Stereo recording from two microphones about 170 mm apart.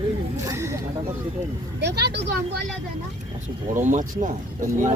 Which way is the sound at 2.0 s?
80° right.